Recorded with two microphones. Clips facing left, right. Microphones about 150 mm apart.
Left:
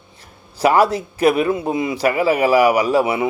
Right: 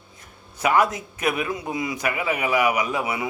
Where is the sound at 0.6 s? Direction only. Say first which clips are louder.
Left 6 dB; 30° left (ahead or behind).